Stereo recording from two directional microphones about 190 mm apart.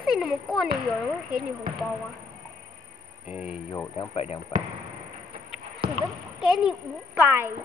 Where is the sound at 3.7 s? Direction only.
25° left (ahead or behind).